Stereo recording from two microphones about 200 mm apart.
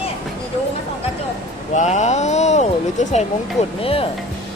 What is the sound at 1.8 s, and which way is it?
Speech, 35° left (ahead or behind).